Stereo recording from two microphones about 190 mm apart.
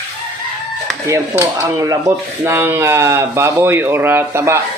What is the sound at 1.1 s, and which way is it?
Speech, 15° right (ahead or behind).